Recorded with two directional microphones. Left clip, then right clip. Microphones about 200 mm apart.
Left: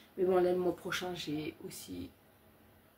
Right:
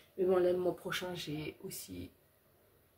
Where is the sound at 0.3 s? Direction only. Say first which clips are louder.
Left 1 dB; centre (ahead or behind).